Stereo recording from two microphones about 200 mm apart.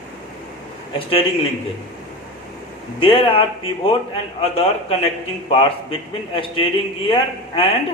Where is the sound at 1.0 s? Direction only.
25° left (ahead or behind).